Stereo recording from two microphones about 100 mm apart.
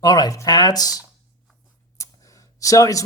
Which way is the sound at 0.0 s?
40° left (ahead or behind).